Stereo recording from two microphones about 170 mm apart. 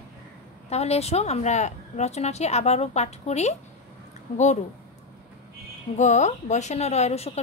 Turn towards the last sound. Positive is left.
turn(degrees=40)  # may be behind; listen again after turning